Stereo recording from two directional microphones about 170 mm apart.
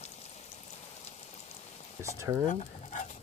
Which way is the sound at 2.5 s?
45° left (ahead or behind).